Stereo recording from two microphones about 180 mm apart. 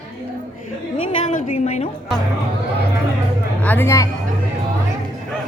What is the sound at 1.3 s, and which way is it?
Speech, 35° left (ahead or behind).